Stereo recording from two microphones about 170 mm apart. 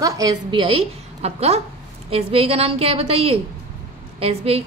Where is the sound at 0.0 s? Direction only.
20° right (ahead or behind).